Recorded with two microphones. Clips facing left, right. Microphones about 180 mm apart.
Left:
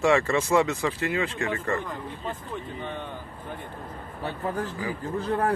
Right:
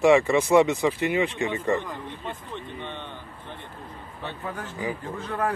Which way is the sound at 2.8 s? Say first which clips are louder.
Left 2 dB; 5° left (ahead or behind).